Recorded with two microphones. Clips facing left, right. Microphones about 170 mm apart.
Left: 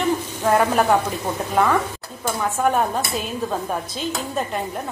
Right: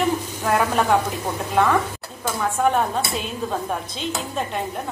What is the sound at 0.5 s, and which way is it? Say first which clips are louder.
Speech: left 1 dB; 5° left (ahead or behind).